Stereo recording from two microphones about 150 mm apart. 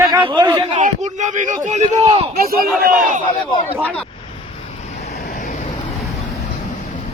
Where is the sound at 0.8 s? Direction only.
55° right (ahead or behind).